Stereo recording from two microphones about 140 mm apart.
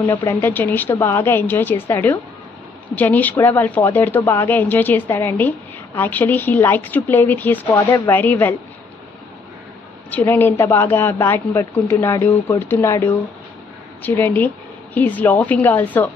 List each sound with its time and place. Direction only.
0.3 s speech: 15° left (ahead or behind)
10.1 s speech: 15° left (ahead or behind)